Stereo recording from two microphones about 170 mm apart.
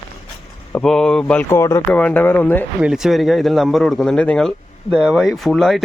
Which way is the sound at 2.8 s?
5° right (ahead or behind).